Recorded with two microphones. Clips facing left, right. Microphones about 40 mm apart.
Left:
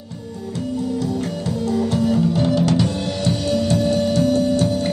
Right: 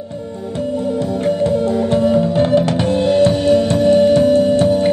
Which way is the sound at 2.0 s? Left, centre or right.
Right.